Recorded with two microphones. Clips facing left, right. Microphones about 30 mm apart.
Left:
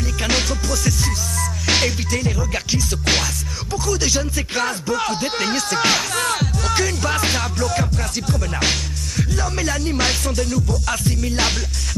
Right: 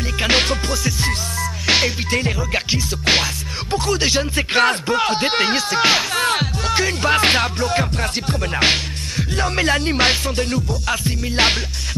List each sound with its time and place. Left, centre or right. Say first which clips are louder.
0.2 s music: right 4 dB; right
1.4 s music: right 2 dB; centre
2.0 s music: right 2 dB; right
3.7 s speech: right 2 dB; right
6.6 s music: even; centre
6.9 s speech: right 5 dB; right
7.5 s music: right 2 dB; right
7.9 s speech: right 2 dB; right
8.5 s music: right 8 dB; right
10.7 s music: right 1 dB; right